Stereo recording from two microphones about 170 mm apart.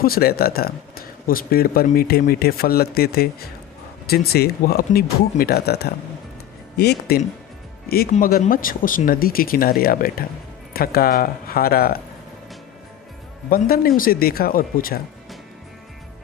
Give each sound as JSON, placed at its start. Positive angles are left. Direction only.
{"t": 0.0, "sound": "speech", "side_deg": 60}
{"t": 8.1, "sound": "speech", "side_deg": 55}
{"t": 13.5, "sound": "speech", "side_deg": 60}